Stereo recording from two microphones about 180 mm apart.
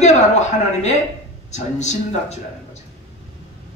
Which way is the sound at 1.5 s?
40° left (ahead or behind).